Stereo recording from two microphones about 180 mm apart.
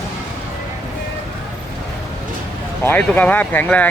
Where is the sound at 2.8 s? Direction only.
10° left (ahead or behind).